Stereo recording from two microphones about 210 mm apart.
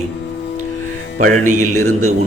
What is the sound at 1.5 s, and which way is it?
Speech, 90° right.